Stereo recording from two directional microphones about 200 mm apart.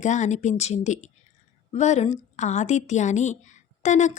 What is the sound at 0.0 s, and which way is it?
A woman's voice, 35° left (ahead or behind).